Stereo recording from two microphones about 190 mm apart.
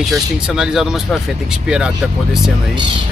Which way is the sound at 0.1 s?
5° right (ahead or behind).